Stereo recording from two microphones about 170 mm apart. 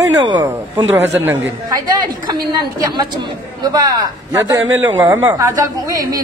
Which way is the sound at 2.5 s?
25° right (ahead or behind).